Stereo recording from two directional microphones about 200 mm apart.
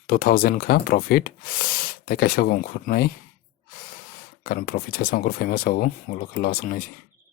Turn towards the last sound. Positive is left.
turn(degrees=45)  # may be behind; listen again after turning